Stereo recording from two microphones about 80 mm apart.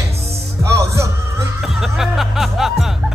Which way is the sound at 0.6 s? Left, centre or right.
Right.